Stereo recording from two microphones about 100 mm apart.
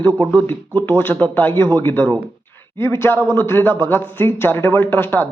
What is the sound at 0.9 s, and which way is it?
Speech, 20° left (ahead or behind).